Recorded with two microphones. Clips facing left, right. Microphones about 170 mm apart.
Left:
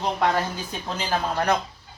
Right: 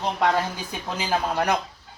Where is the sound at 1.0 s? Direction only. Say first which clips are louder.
Right 1 dB; 10° right (ahead or behind).